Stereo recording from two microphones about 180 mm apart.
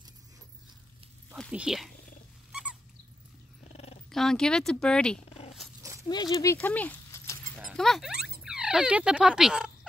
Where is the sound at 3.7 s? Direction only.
35° left (ahead or behind).